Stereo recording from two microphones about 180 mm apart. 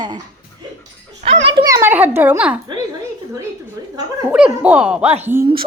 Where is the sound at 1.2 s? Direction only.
30° right (ahead or behind); by 2.6 s 10° right (ahead or behind).